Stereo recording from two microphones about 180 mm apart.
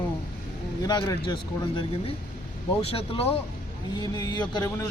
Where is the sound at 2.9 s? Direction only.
35° left (ahead or behind).